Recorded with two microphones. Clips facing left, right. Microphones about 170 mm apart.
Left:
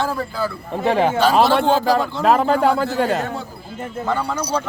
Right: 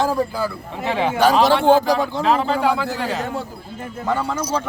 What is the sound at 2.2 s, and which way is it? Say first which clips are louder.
Speech: left 4 dB; 50° left (ahead or behind).